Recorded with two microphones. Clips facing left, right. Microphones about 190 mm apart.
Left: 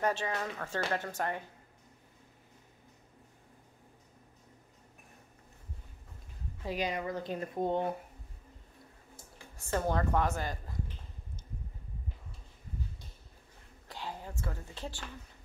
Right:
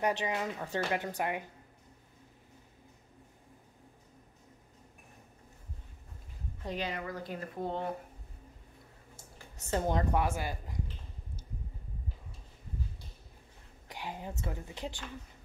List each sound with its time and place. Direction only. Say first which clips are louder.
0.0 s speech: right 1 dB; 15° right (ahead or behind)
6.6 s speech: left 3 dB; 10° left (ahead or behind)
9.6 s speech: even; 20° right (ahead or behind)
13.8 s a woman's voice: right 1 dB; 15° right (ahead or behind)